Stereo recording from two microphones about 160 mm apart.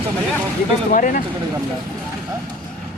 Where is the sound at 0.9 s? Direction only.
55° left (ahead or behind).